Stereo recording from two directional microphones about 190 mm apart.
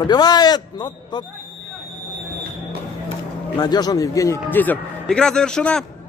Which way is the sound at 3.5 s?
20° left (ahead or behind).